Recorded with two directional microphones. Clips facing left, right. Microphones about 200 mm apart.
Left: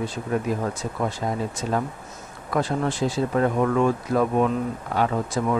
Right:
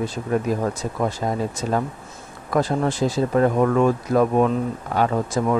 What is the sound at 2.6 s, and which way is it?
Speech, 40° right (ahead or behind).